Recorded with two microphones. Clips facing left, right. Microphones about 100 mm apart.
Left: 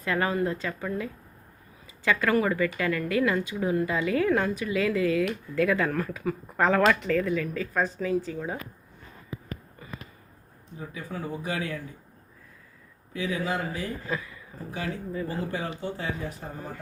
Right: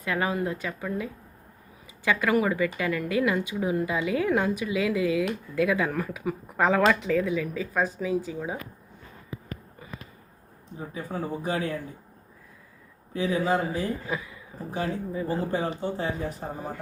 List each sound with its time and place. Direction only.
0.0 s speech: 10° right (ahead or behind)
2.0 s speech: 15° right (ahead or behind)
10.8 s speech: 30° right (ahead or behind)
13.1 s speech: 35° right (ahead or behind)
14.1 s speech: 15° right (ahead or behind)
14.7 s speech: 35° right (ahead or behind)
15.1 s speech: 20° right (ahead or behind)